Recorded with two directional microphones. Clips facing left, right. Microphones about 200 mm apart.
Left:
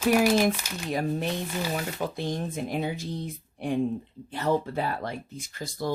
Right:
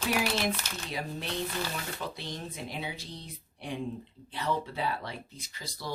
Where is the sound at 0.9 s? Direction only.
50° left (ahead or behind).